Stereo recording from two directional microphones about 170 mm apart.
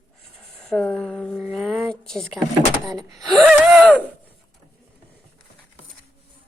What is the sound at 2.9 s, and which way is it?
Speech, 20° right (ahead or behind).